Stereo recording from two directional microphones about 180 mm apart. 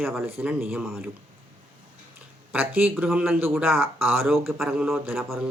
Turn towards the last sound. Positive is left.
turn(degrees=-5)  # may be behind; listen again after turning